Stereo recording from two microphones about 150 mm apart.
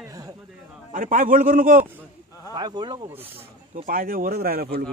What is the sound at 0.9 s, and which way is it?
Speech, 65° right (ahead or behind).